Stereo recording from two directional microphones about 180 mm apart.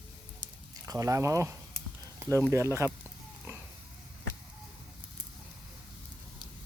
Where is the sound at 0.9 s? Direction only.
20° right (ahead or behind).